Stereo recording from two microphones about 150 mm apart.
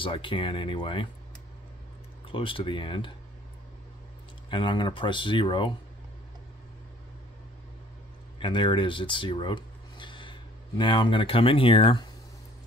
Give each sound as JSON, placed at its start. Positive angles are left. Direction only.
{"t": 0.0, "sound": "speech", "side_deg": 35}
{"t": 2.2, "sound": "speech", "side_deg": 35}
{"t": 4.5, "sound": "speech", "side_deg": 30}
{"t": 8.4, "sound": "speech", "side_deg": 30}